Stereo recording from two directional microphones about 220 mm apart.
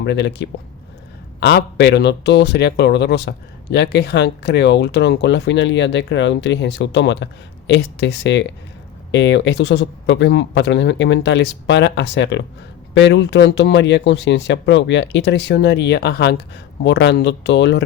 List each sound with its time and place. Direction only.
0.0 s speech: 50° left (ahead or behind)